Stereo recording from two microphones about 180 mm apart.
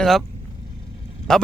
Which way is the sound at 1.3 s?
5° left (ahead or behind).